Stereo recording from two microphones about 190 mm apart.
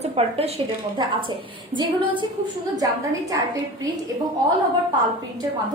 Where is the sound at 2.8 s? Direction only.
20° right (ahead or behind).